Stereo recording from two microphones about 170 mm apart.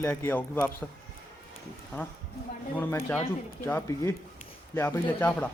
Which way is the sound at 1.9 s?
15° left (ahead or behind).